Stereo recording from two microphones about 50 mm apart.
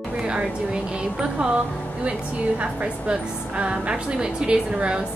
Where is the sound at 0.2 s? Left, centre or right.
Centre.